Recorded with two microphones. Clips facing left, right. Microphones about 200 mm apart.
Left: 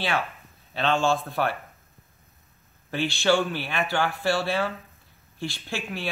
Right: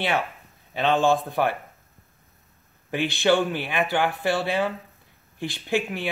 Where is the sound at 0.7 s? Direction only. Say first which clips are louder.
Right 3 dB; 15° right (ahead or behind).